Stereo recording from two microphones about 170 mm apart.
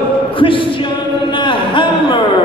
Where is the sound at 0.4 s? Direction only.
30° left (ahead or behind).